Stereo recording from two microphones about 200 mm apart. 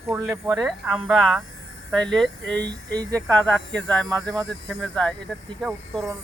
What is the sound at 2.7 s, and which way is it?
Speech, 20° right (ahead or behind).